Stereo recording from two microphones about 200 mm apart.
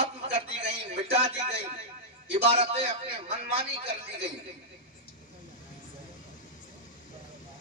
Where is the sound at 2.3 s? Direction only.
30° right (ahead or behind).